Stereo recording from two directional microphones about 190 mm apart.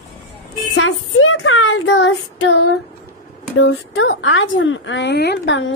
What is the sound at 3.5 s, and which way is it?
A woman's voice, 85° left.